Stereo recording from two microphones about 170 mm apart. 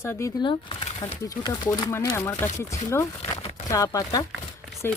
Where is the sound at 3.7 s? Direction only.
20° left (ahead or behind).